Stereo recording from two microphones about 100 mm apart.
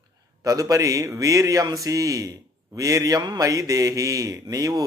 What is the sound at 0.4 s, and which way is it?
A man's voice, 35° right (ahead or behind).